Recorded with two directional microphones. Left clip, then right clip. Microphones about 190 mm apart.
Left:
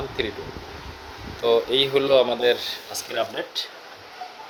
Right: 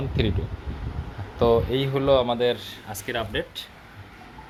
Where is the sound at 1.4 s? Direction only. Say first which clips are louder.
Left 1 dB; centre (ahead or behind).